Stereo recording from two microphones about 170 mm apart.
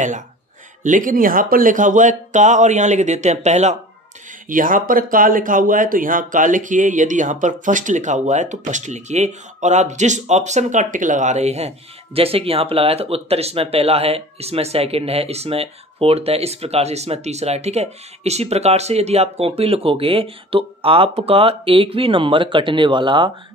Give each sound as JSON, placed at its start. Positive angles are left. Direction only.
{"t": 0.8, "sound": "speech", "side_deg": -50}
{"t": 4.5, "sound": "speech", "side_deg": -50}